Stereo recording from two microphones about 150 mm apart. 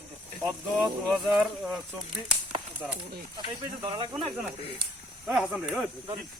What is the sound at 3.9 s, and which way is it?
Speech, 35° right (ahead or behind).